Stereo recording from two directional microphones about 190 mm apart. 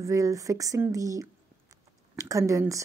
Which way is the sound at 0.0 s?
15° right (ahead or behind).